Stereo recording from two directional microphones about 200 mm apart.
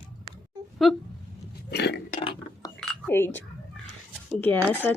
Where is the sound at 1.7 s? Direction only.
55° left (ahead or behind).